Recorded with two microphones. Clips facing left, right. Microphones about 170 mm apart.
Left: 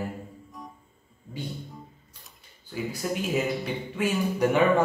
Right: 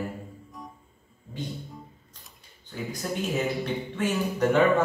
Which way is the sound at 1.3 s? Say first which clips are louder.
Even; 10° left (ahead or behind).